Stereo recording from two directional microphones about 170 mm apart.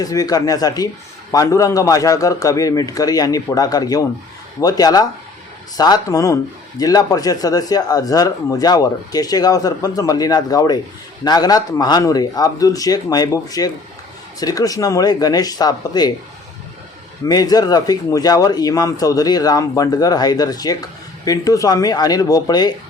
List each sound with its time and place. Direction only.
0.0 s speech: 20° left (ahead or behind)
17.2 s speech: 25° left (ahead or behind)